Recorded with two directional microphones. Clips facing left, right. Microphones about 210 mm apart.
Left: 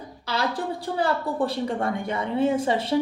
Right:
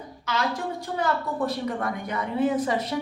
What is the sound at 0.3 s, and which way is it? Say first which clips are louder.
A woman's voice: left 1 dB; 35° left (ahead or behind).